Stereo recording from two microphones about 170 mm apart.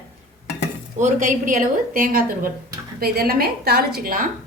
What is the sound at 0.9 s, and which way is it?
A woman's voice, 45° right (ahead or behind).